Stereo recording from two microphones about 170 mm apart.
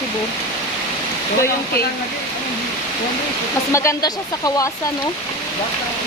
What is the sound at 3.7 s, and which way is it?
Speech, 15° left (ahead or behind).